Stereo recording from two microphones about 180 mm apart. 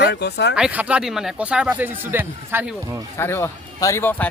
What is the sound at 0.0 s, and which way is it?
Speech, 70° left (ahead or behind).